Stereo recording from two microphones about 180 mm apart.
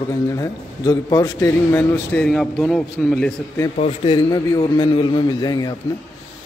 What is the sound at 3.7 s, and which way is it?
A man's voice, 35° left (ahead or behind).